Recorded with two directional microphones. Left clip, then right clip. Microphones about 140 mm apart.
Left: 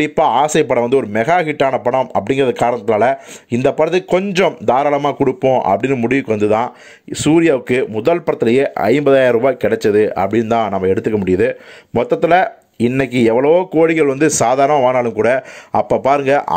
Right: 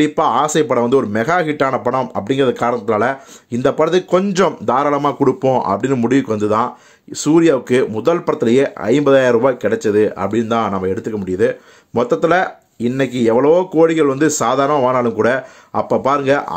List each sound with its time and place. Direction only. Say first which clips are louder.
0.0 s speech: left 1 dB; 15° left (ahead or behind)
5.4 s speech: left 2 dB; centre (ahead or behind)
5.7 s speech: left 2 dB; 15° left (ahead or behind); by 16.5 s 30° left (ahead or behind)